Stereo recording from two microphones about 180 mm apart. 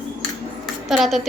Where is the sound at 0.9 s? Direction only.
Centre (ahead or behind).